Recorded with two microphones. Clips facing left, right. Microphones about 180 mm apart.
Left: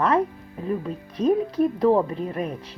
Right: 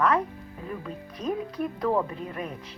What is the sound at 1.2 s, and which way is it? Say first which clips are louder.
Speech: left 9 dB; 30° left (ahead or behind).